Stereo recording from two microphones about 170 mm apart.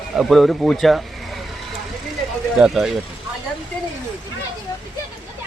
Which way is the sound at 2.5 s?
5° right (ahead or behind).